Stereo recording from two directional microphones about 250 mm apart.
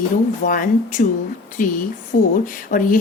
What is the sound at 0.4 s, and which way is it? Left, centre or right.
A woman's voice, left.